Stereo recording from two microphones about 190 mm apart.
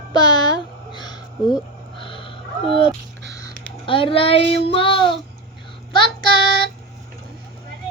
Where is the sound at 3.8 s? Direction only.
25° left (ahead or behind).